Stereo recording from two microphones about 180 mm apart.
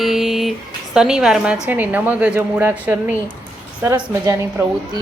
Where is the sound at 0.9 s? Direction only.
5° right (ahead or behind).